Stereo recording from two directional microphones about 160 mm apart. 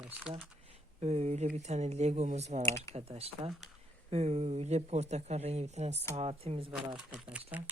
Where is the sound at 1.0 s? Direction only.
40° right (ahead or behind).